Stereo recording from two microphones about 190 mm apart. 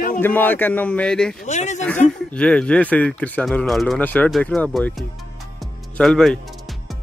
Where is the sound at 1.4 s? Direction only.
40° left (ahead or behind).